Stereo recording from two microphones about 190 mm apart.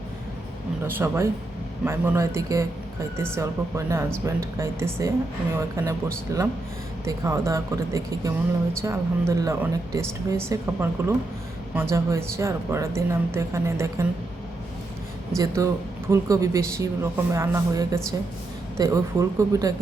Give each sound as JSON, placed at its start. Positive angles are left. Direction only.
{"t": 0.9, "sound": "speech", "side_deg": -10}
{"t": 15.4, "sound": "speech", "side_deg": -15}